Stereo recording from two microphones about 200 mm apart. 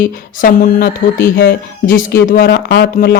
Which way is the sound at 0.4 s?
45° left (ahead or behind).